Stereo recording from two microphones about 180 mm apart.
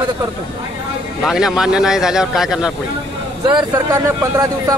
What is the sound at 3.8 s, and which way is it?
Speech, 15° right (ahead or behind).